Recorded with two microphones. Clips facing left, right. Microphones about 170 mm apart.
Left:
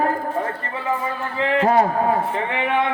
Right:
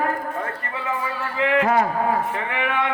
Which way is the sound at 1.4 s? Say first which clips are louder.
Left 2 dB; 30° left (ahead or behind).